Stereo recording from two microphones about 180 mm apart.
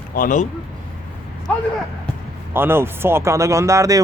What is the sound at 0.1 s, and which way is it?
Speech, 50° left (ahead or behind).